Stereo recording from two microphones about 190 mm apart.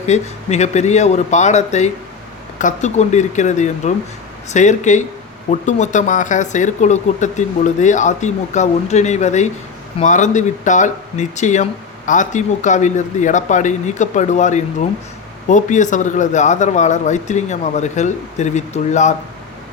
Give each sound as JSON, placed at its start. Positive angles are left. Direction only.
{"t": 0.1, "sound": "speech", "side_deg": 35}